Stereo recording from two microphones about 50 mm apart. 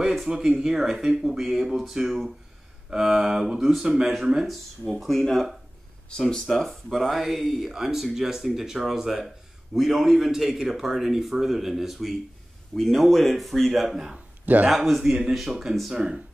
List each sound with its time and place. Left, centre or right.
0.3 s speech: centre
14.4 s speech: right
14.7 s speech: centre
15.9 s speech: centre